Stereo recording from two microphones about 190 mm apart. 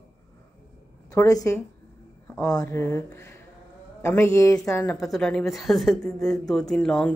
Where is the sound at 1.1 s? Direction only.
20° left (ahead or behind).